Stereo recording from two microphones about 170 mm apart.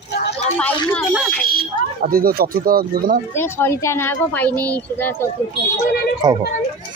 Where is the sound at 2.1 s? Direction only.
60° right (ahead or behind).